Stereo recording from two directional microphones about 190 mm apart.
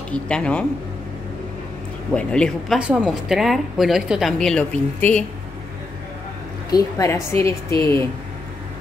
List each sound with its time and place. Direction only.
0.1 s a woman's voice: 5° left (ahead or behind)
2.1 s a woman's voice: 5° left (ahead or behind)
6.7 s a woman's voice: 20° left (ahead or behind)